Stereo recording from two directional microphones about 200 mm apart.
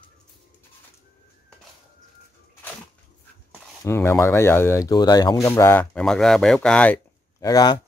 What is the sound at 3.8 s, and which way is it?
Speech, 10° left (ahead or behind).